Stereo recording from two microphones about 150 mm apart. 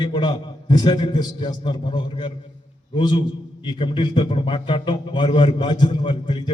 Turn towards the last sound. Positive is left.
turn(degrees=30)  # may be behind; listen again after turning